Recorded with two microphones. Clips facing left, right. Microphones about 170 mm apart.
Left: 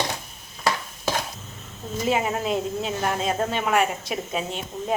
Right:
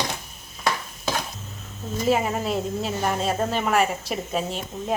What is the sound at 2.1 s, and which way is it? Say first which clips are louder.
Speech: right 1 dB; centre (ahead or behind).